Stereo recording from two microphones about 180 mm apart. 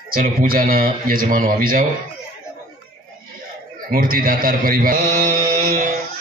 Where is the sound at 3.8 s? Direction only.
50° right (ahead or behind).